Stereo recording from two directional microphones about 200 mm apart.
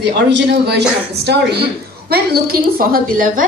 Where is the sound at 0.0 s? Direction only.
55° right (ahead or behind).